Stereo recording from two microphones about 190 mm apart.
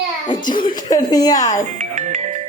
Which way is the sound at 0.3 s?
45° left (ahead or behind).